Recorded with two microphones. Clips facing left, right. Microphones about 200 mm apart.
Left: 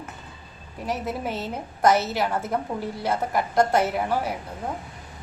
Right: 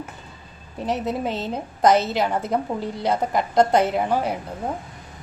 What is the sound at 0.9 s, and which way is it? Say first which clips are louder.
A woman's voice: right 4 dB; 20° right (ahead or behind).